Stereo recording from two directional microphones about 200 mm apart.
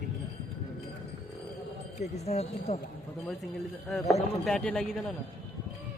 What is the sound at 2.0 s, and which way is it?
Speech, 35° left (ahead or behind).